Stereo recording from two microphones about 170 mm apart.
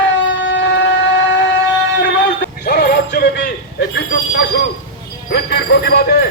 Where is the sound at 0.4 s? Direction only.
90° left.